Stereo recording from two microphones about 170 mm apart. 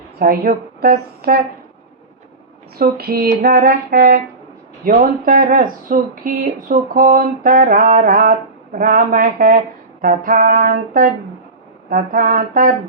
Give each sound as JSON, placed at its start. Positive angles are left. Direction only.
{"t": 0.2, "sound": "speech", "side_deg": -60}
{"t": 2.7, "sound": "speech", "side_deg": -60}